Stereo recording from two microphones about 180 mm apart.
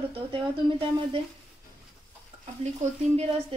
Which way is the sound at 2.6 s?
40° right (ahead or behind).